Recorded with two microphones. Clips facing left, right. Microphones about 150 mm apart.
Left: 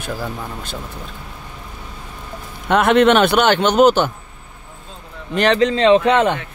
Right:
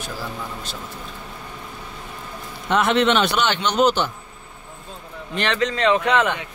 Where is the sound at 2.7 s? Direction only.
55° left (ahead or behind).